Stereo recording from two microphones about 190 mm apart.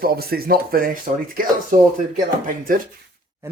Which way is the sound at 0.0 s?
55° right (ahead or behind).